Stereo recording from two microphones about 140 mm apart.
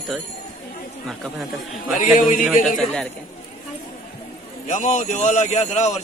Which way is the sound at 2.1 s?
60° left (ahead or behind).